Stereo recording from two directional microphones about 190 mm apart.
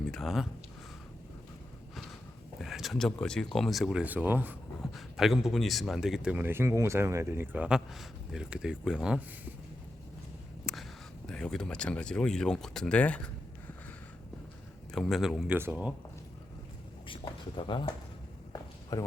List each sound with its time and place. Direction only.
0.1 s speech: centre (ahead or behind)
2.6 s speech: centre (ahead or behind)
10.7 s a sound: centre (ahead or behind)
11.3 s speech: 5° left (ahead or behind)
14.9 s speech: centre (ahead or behind)
17.6 s speech: 25° left (ahead or behind)